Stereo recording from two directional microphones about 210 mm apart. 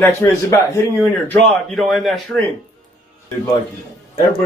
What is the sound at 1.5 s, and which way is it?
Speech, centre (ahead or behind).